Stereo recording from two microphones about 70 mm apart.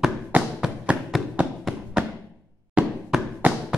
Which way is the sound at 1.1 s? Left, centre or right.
Centre.